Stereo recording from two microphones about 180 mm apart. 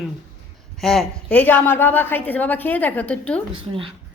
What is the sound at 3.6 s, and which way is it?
Speech, 30° right (ahead or behind).